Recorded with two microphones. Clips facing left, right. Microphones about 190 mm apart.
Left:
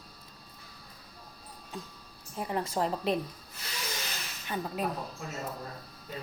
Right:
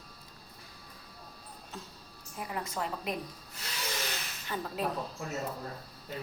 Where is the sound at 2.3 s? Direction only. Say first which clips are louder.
Left 5 dB; 30° left (ahead or behind).